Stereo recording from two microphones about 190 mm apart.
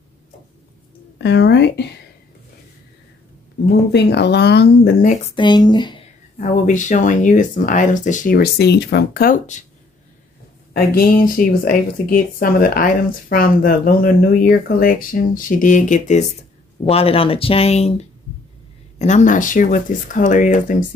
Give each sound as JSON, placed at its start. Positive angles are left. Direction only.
{"t": 1.1, "sound": "speech", "side_deg": 65}
{"t": 3.6, "sound": "speech", "side_deg": 60}
{"t": 5.3, "sound": "speech", "side_deg": 25}
{"t": 6.3, "sound": "speech", "side_deg": 40}
{"t": 10.7, "sound": "speech", "side_deg": 50}
{"t": 18.9, "sound": "speech", "side_deg": 40}